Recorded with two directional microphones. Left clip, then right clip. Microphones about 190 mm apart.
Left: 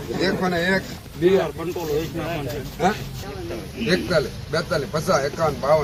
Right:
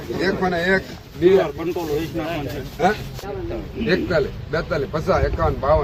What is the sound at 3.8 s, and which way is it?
A man's voice, 35° right (ahead or behind).